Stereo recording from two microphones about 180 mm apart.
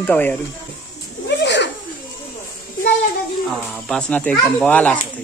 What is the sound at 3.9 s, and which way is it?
Speech, 5° left (ahead or behind).